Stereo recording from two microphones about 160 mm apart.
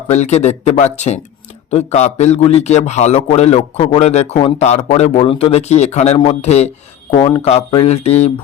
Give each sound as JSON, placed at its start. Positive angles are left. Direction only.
{"t": 0.1, "sound": "a man's voice", "side_deg": 45}
{"t": 7.2, "sound": "speech", "side_deg": 25}
{"t": 7.4, "sound": "a man's voice", "side_deg": 35}